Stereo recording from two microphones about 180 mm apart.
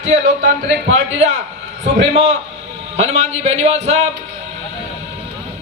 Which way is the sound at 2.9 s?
35° right (ahead or behind).